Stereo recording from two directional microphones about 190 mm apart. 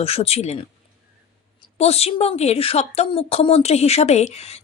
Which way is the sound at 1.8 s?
35° left (ahead or behind).